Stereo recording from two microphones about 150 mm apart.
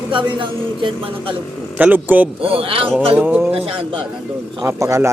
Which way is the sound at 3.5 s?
40° right (ahead or behind).